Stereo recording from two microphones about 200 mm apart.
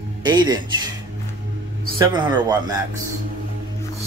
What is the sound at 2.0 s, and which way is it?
Speech, 20° right (ahead or behind).